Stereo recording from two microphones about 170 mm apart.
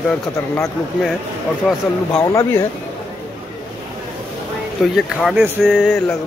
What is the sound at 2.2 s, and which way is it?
Speech, 20° left (ahead or behind).